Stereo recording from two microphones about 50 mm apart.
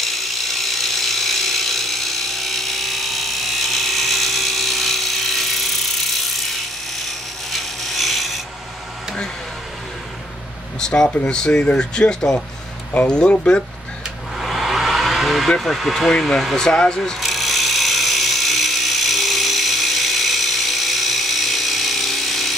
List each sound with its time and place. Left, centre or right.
0.0 s a sound: centre
7.1 s wood: centre
10.8 s speech: centre
14.4 s vehicle: centre
15.6 s speech: centre
17.2 s a sound: centre